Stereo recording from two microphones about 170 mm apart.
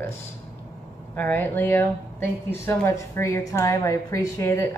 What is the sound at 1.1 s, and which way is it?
A woman's voice, 10° left (ahead or behind).